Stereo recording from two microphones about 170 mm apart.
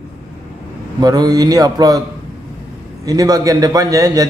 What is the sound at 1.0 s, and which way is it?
A man's voice, 20° right (ahead or behind).